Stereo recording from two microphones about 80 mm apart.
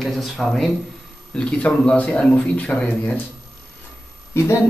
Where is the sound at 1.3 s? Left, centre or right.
Centre.